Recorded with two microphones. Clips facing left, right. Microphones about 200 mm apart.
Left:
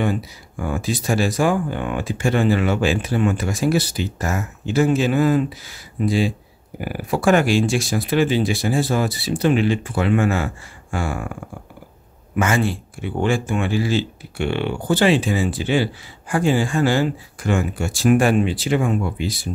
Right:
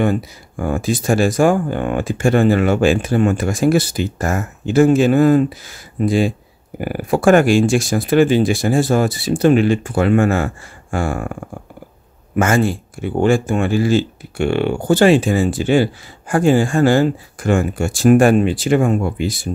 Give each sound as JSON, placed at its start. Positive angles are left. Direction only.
{"t": 0.0, "sound": "speech", "side_deg": -50}
{"t": 12.4, "sound": "speech", "side_deg": -45}